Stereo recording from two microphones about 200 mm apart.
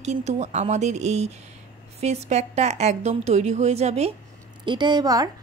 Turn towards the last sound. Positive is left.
turn(degrees=-20)  # may be behind; listen again after turning